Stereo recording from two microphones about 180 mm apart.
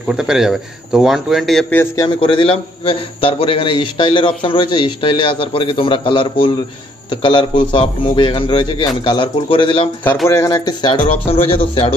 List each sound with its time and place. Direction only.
0.1 s a man's voice: 5° right (ahead or behind)
2.0 s a man's voice: 30° left (ahead or behind)
10.2 s a man's voice: 15° left (ahead or behind); by 11.9 s 35° left (ahead or behind)